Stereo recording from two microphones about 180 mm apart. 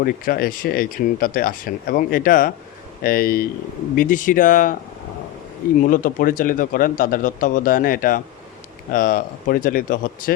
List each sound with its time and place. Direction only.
0.0 s speech: 55° left (ahead or behind)
5.8 s speech: 50° left (ahead or behind)